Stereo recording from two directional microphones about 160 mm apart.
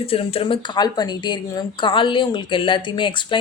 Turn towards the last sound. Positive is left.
turn(degrees=30)  # may be behind; listen again after turning